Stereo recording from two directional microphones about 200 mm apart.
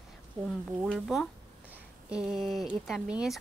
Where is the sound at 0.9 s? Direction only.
Centre (ahead or behind).